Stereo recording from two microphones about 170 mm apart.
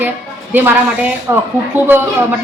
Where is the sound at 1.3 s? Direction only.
15° right (ahead or behind).